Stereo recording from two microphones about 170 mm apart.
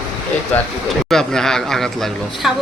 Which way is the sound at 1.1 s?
5° left (ahead or behind).